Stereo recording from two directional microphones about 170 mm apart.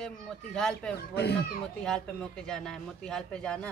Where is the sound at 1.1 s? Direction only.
70° left (ahead or behind).